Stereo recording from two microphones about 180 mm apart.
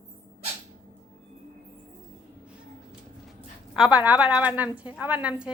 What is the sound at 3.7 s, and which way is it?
A woman's voice, 5° right (ahead or behind).